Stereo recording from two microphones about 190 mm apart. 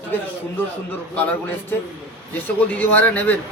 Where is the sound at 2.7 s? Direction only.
10° left (ahead or behind).